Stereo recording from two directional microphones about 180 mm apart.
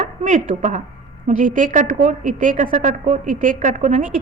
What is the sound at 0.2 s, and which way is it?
A woman's voice, 45° right (ahead or behind).